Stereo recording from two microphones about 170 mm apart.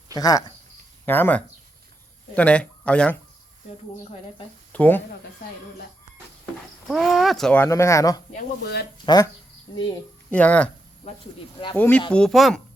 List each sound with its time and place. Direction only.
0.1 s speech: 20° left (ahead or behind)
4.7 s speech: 10° left (ahead or behind)
6.4 s speech: centre (ahead or behind); by 8.2 s 20° left (ahead or behind)
8.6 s speech: 70° left (ahead or behind)
9.0 s speech: 20° left (ahead or behind)
10.2 s speech: 10° left (ahead or behind)
11.8 s speech: 5° left (ahead or behind)